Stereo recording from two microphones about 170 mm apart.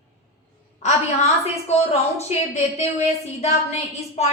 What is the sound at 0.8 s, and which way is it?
A woman's voice, 40° left (ahead or behind).